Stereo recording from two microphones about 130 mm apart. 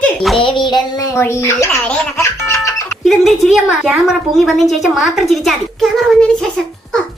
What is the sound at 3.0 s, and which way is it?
A child's voice, centre (ahead or behind).